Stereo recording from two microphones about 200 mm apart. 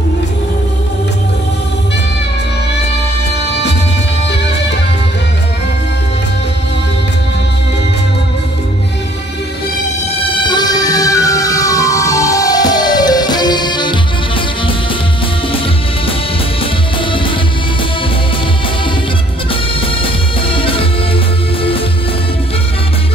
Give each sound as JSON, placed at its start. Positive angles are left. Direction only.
{"t": 10.3, "sound": "music", "side_deg": 25}
{"t": 20.0, "sound": "music", "side_deg": 25}